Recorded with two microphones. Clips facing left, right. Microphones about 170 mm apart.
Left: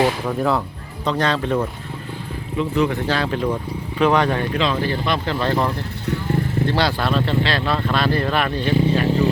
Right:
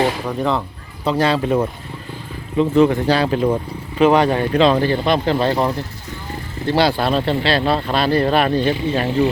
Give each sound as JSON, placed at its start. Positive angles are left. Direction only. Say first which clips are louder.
{"t": 0.3, "sound": "speech", "louder": "even", "side_deg": 0}
{"t": 1.0, "sound": "speech", "louder": "right 3 dB", "side_deg": -10}
{"t": 2.6, "sound": "speech", "louder": "right 6 dB", "side_deg": -30}
{"t": 6.7, "sound": "speech", "louder": "right 7 dB", "side_deg": -10}
{"t": 6.9, "sound": "speech", "louder": "right 2 dB", "side_deg": -30}